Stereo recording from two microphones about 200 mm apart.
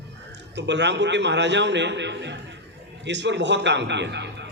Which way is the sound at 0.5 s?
60° right (ahead or behind).